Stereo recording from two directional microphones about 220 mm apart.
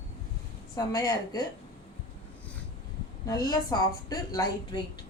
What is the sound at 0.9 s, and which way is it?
Speech, 15° left (ahead or behind).